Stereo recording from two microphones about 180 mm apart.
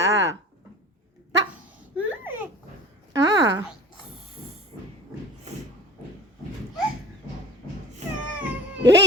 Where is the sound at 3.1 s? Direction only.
20° right (ahead or behind).